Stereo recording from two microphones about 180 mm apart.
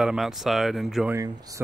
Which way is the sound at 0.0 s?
Centre (ahead or behind).